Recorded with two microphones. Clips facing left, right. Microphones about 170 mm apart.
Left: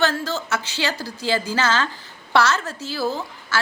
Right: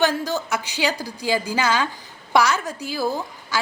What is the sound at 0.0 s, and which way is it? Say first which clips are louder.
A woman's voice: right 1 dB; 15° right (ahead or behind).